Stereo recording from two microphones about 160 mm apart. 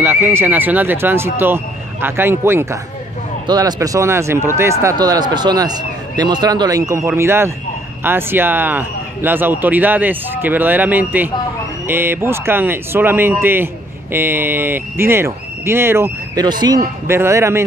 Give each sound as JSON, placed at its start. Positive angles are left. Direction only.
{"t": 0.0, "sound": "a man's voice", "side_deg": -15}
{"t": 16.4, "sound": "a man's voice", "side_deg": -25}